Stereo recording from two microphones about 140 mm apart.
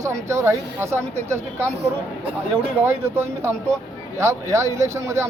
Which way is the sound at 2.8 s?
20° right (ahead or behind).